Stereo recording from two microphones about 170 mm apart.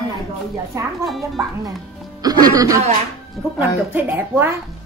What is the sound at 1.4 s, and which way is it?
A woman's voice, 15° right (ahead or behind).